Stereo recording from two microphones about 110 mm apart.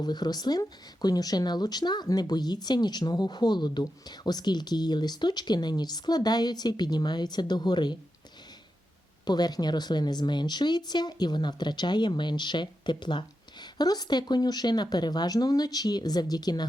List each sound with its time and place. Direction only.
0.0 s speech: 40° left (ahead or behind)
9.2 s speech: 40° left (ahead or behind)